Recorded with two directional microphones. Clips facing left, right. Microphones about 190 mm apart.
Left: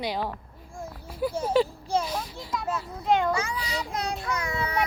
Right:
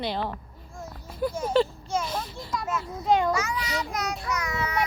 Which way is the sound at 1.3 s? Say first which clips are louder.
Left 1 dB; 35° left (ahead or behind).